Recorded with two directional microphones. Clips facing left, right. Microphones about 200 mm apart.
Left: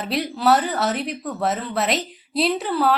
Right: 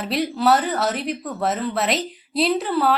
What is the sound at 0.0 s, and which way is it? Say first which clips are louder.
Speech: right 1 dB; centre (ahead or behind).